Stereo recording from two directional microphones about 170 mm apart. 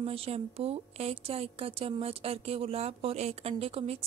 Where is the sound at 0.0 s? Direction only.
35° right (ahead or behind).